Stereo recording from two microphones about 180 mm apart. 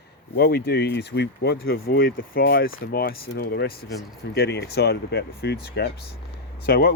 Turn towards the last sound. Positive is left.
turn(degrees=60)  # may be behind; listen again after turning